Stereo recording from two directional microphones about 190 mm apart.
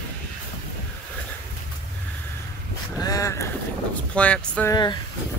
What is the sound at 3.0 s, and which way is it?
Speech, 20° left (ahead or behind).